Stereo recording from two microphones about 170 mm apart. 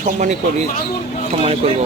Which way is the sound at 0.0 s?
45° right (ahead or behind).